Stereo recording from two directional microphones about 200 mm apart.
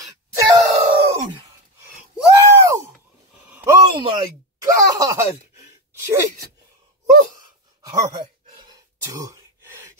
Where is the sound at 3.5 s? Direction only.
10° right (ahead or behind).